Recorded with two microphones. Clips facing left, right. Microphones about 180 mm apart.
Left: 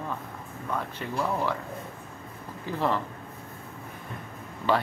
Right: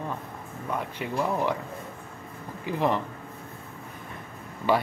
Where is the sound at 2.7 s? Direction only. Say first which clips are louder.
Right 2 dB; 15° right (ahead or behind).